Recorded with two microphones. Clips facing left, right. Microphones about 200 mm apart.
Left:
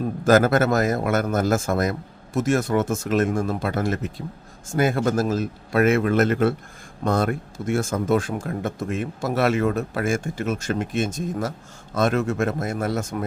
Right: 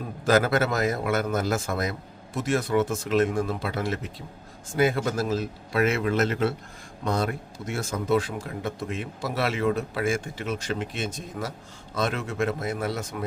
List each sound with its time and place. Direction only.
0.3 s speech: 45° left (ahead or behind)